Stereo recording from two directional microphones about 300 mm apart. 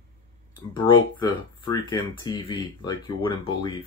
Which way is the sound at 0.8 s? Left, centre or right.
Centre.